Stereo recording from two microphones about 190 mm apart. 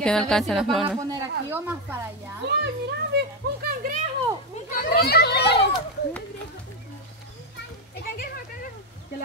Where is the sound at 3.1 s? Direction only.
55° right (ahead or behind).